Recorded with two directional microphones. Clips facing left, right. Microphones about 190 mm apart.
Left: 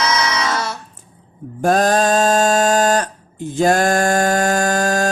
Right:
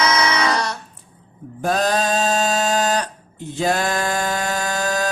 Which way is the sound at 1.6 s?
45° left (ahead or behind).